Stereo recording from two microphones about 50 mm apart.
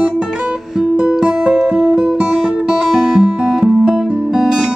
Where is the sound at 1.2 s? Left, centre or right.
Centre.